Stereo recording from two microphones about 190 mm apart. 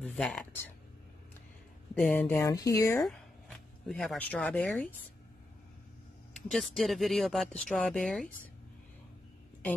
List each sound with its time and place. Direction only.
0.0 s speech: 5° left (ahead or behind)
2.0 s speech: 10° left (ahead or behind)
3.0 s speech: 5° left (ahead or behind)
6.3 s speech: centre (ahead or behind)